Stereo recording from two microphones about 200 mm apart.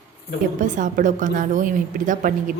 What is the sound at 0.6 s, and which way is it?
A woman's voice, 40° right (ahead or behind).